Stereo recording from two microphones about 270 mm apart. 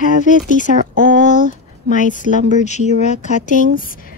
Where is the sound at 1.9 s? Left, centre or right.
Left.